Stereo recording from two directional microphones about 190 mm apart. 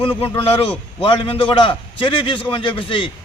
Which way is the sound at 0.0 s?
25° left (ahead or behind).